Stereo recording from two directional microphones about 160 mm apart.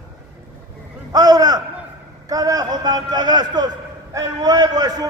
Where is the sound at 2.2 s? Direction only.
25° right (ahead or behind).